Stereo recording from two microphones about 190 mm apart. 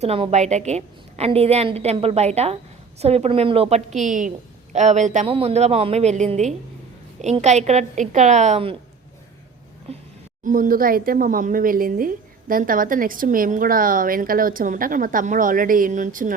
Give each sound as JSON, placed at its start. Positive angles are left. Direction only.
{"t": 0.0, "sound": "a woman's voice", "side_deg": -35}
{"t": 9.9, "sound": "speech", "side_deg": -35}
{"t": 10.4, "sound": "speech", "side_deg": -45}